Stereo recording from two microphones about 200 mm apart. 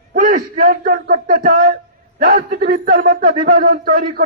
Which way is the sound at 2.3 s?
40° right (ahead or behind).